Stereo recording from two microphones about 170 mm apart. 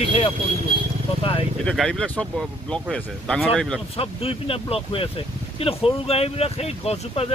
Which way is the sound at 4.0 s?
35° left (ahead or behind).